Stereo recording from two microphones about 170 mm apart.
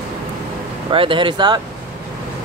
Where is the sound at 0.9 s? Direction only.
30° right (ahead or behind).